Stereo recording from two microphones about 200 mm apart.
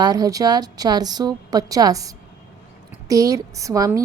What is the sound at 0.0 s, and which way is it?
A woman's voice, 20° right (ahead or behind).